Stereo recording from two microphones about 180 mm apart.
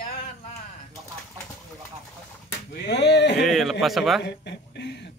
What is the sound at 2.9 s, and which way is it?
Speech, 70° left (ahead or behind).